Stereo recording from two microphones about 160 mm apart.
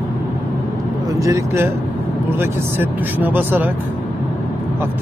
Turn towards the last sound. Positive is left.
turn(degrees=-10)  # may be behind; listen again after turning